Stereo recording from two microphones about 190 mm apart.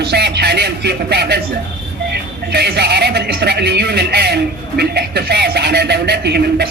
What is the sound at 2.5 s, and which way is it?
Speech, 60° right (ahead or behind).